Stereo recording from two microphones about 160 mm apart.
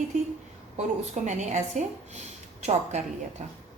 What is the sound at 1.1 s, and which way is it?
A woman's voice, 50° right (ahead or behind).